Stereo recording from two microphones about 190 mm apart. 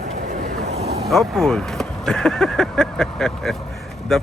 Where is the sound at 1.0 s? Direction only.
Centre (ahead or behind).